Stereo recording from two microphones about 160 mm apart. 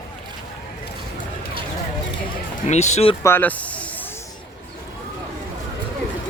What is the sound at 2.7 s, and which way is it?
Speech, 45° left (ahead or behind).